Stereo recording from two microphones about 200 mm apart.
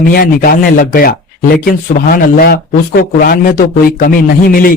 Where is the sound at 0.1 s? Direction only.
45° left (ahead or behind).